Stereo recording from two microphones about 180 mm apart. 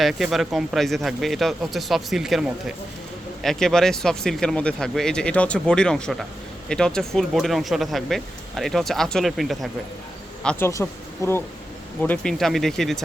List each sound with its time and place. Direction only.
0.0 s speech: centre (ahead or behind)
10.7 s speech: 15° left (ahead or behind); by 13.0 s centre (ahead or behind)